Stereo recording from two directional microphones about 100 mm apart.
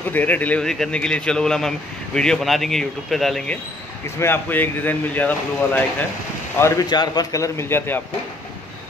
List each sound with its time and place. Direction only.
0.1 s speech: 15° left (ahead or behind); by 3.4 s centre (ahead or behind)
4.2 s speech: 20° left (ahead or behind)
6.9 s a man's voice: 45° left (ahead or behind); by 8.0 s 25° left (ahead or behind)